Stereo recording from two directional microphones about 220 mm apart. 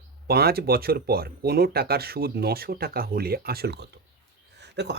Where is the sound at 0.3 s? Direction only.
45° right (ahead or behind).